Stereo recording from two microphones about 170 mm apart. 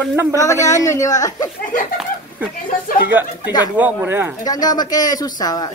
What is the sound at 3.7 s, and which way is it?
Speech, 10° right (ahead or behind).